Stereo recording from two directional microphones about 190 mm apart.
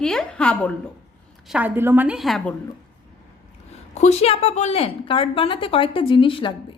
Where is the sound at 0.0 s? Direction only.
5° left (ahead or behind).